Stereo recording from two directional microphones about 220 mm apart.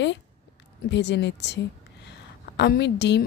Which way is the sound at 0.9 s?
50° left (ahead or behind).